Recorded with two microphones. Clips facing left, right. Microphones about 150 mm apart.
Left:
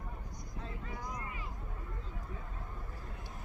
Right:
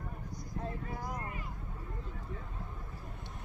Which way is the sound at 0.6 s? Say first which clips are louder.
Right 3 dB; 50° right (ahead or behind).